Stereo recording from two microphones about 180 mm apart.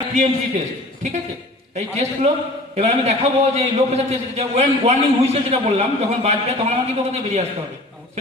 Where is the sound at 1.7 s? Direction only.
40° right (ahead or behind).